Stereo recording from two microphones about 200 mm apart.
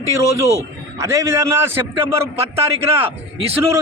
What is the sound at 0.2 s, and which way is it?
A man's voice, 15° right (ahead or behind).